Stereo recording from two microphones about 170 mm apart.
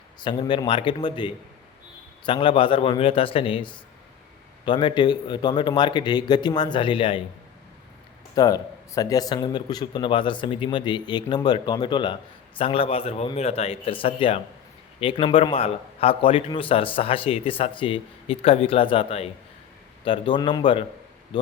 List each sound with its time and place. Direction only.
0.2 s a man's voice: 30° left (ahead or behind)
8.4 s a man's voice: 20° left (ahead or behind)